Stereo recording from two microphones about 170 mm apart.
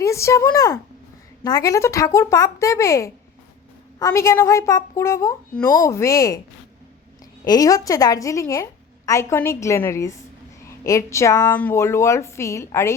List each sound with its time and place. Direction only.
0.0 s a woman's voice: 15° left (ahead or behind)
7.4 s a woman's voice: 20° left (ahead or behind)